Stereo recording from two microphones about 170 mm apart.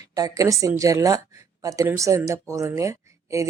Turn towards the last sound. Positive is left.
turn(degrees=-20)  # may be behind; listen again after turning